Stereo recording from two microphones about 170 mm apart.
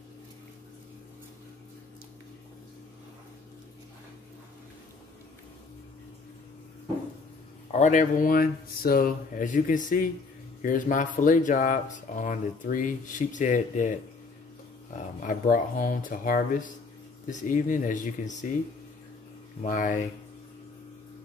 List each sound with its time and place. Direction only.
7.7 s speech: 45° left (ahead or behind)
15.2 s speech: 55° left (ahead or behind)
19.6 s speech: 50° left (ahead or behind)